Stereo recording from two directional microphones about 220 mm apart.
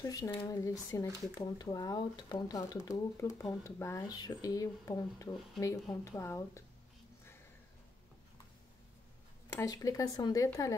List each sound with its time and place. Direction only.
0.0 s speech: 15° left (ahead or behind)
9.6 s speech: 15° left (ahead or behind)